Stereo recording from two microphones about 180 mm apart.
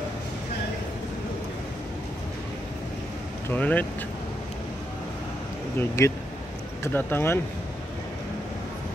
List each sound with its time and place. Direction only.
3.4 s speech: 10° left (ahead or behind)
5.8 s speech: 15° left (ahead or behind)